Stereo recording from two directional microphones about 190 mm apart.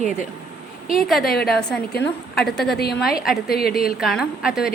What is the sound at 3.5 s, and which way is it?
Speech, 55° left (ahead or behind).